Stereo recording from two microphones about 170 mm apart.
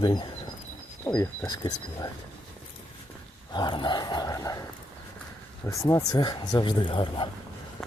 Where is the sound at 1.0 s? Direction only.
15° left (ahead or behind).